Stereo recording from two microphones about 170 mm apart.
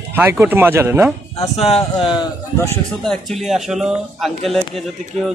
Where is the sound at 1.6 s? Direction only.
35° left (ahead or behind).